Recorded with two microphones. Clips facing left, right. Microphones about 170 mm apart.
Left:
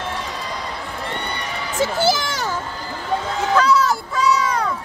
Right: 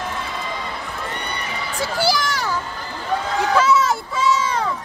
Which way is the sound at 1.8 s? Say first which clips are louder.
Left 2 dB; 20° left (ahead or behind).